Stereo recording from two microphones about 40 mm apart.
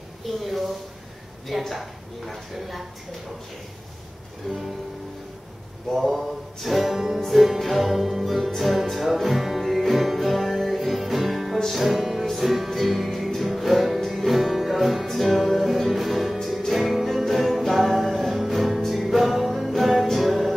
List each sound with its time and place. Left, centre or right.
0.4 s a sound: centre
1.7 s music: centre
4.4 s music: centre
5.9 s music: centre